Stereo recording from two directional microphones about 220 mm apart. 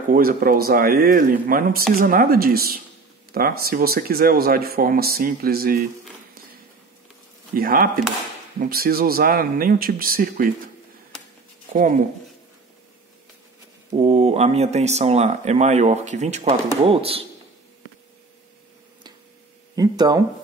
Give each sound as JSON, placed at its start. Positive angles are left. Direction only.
{"t": 0.1, "sound": "speech", "side_deg": -40}
{"t": 7.5, "sound": "speech", "side_deg": -40}
{"t": 13.9, "sound": "speech", "side_deg": -30}
{"t": 19.7, "sound": "speech", "side_deg": -15}